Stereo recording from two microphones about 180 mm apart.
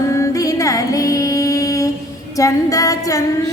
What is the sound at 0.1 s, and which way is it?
Music, 15° left (ahead or behind).